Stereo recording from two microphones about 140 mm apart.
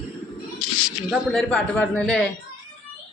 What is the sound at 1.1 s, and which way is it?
A man's voice, 5° left (ahead or behind).